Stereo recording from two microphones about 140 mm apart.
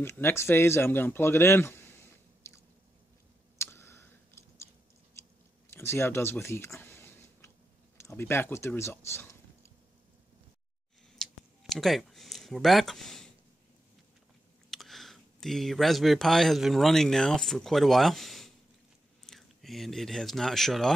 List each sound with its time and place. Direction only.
0.0 s speech: 15° left (ahead or behind)
2.4 s chewing: 20° left (ahead or behind)
3.5 s clicking: 20° left (ahead or behind)
5.2 s a sound: 20° left (ahead or behind)
8.0 s speech: 20° left (ahead or behind)
11.2 s a sound: 5° left (ahead or behind)
11.7 s speech: centre (ahead or behind)
14.7 s speech: centre (ahead or behind)